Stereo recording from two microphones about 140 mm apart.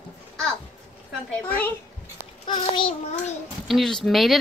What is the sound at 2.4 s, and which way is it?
Speech, 35° left (ahead or behind).